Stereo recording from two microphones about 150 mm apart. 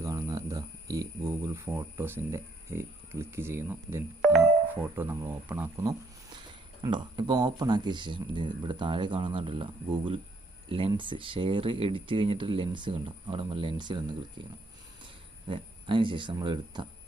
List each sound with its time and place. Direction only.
0.0 s cricket: 20° right (ahead or behind)
4.7 s speech: 15° right (ahead or behind); by 16.9 s 30° right (ahead or behind)